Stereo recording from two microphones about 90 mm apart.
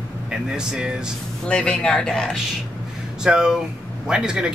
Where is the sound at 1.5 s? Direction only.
10° left (ahead or behind).